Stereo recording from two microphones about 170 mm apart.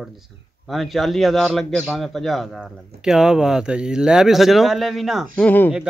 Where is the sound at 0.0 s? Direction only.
Centre (ahead or behind).